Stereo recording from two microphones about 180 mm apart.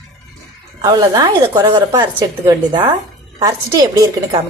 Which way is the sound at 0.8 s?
25° right (ahead or behind).